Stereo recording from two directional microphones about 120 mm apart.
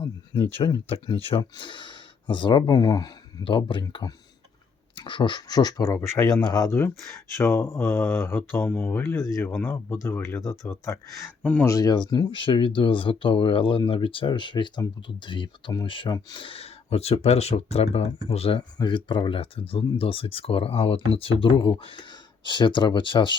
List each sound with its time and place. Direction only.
0.9 s speech: 50° left (ahead or behind)
1.5 s speech: 40° left (ahead or behind)
18.8 s speech: 40° left (ahead or behind)